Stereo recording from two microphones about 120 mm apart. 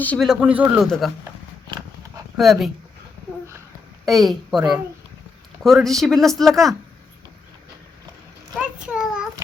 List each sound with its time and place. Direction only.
0.2 s speech: centre (ahead or behind)
0.9 s speech: 5° left (ahead or behind)
2.4 s speech: centre (ahead or behind)
4.0 s speech: centre (ahead or behind)
8.5 s a sound: 5° right (ahead or behind)